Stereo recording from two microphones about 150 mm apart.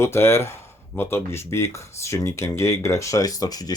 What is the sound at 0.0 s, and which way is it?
Speech, 15° left (ahead or behind).